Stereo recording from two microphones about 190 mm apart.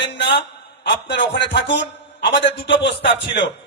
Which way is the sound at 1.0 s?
65° left (ahead or behind).